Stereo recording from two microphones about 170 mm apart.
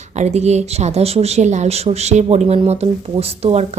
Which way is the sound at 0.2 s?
40° right (ahead or behind).